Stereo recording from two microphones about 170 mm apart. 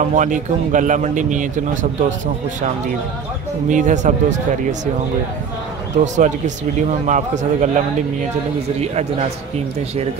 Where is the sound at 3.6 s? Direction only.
45° right (ahead or behind).